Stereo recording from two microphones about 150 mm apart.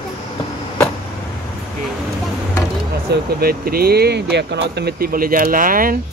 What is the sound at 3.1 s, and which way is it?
Speech, 85° right.